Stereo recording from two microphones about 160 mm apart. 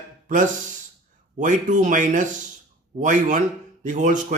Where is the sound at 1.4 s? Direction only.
50° right (ahead or behind).